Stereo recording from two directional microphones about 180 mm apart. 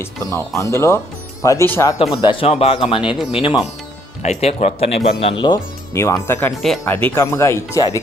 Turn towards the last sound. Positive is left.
turn(degrees=20)  # may be behind; listen again after turning